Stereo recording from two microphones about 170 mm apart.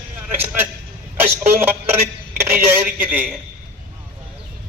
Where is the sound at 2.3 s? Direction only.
15° right (ahead or behind).